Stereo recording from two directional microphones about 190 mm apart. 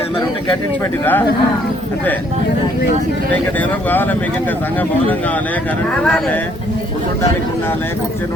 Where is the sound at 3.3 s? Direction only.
10° left (ahead or behind).